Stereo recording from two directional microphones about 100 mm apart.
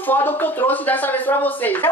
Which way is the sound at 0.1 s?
20° left (ahead or behind).